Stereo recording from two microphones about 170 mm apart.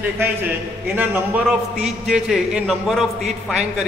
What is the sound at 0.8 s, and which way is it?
A man's voice, 10° right (ahead or behind).